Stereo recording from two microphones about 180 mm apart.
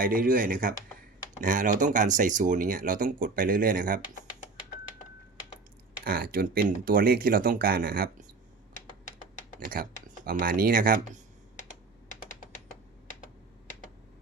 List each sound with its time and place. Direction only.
0.0 s speech: 50° right (ahead or behind)
6.1 s speech: 55° right (ahead or behind)
9.6 s speech: 50° right (ahead or behind)